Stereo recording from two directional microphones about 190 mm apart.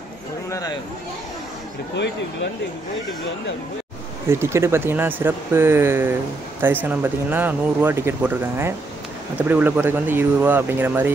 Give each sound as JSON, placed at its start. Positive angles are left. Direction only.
{"t": 0.5, "sound": "speech", "side_deg": 20}
{"t": 4.3, "sound": "speech", "side_deg": -15}